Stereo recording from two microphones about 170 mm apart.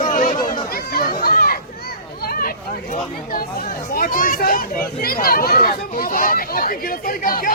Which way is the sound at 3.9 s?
55° left (ahead or behind).